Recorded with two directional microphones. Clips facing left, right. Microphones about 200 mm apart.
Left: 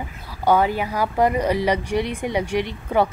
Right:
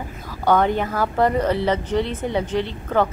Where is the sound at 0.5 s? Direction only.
5° left (ahead or behind).